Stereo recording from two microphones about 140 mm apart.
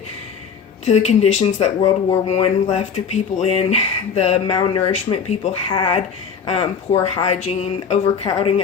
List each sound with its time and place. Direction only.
0.9 s speech: 50° left (ahead or behind)